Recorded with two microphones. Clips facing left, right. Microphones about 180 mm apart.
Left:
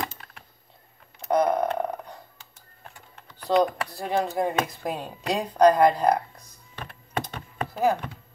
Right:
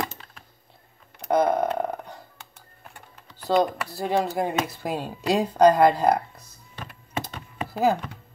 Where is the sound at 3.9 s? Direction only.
5° right (ahead or behind).